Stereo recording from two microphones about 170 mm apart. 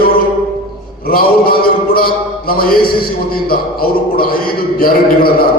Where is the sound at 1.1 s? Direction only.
60° left (ahead or behind).